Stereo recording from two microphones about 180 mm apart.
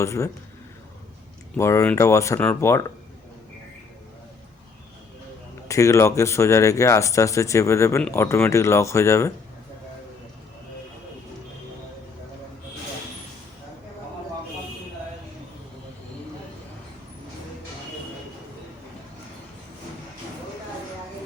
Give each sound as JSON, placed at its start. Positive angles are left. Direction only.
{"t": 0.0, "sound": "speech", "side_deg": 15}
{"t": 1.5, "sound": "speech", "side_deg": 15}
{"t": 5.6, "sound": "speech", "side_deg": 15}